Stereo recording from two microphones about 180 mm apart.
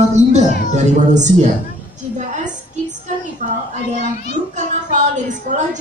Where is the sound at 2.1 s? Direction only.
40° right (ahead or behind).